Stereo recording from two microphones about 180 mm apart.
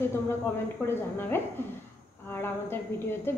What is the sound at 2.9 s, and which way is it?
Speech, 15° left (ahead or behind).